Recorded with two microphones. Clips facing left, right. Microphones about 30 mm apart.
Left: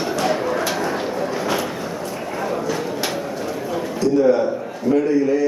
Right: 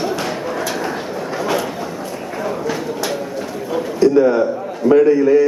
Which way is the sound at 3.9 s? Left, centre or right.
Right.